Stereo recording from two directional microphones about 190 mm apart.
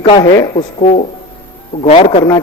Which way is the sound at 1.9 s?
30° left (ahead or behind).